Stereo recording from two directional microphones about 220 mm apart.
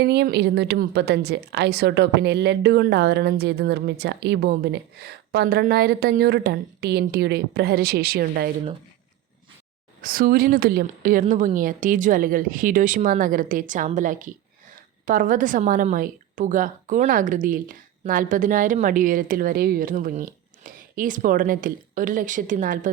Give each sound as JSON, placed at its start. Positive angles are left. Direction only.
{"t": 0.0, "sound": "a woman's voice", "side_deg": -50}
{"t": 10.0, "sound": "a woman's voice", "side_deg": -40}